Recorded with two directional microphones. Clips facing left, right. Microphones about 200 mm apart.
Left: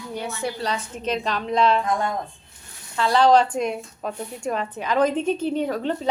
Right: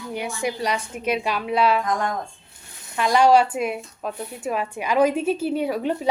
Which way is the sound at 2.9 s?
15° right (ahead or behind).